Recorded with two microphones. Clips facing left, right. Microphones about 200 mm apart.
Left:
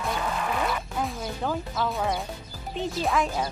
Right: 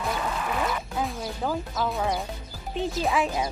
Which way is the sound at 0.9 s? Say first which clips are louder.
Even; centre (ahead or behind).